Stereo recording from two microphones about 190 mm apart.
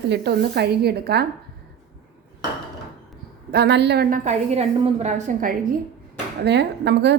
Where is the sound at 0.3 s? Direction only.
60° right (ahead or behind).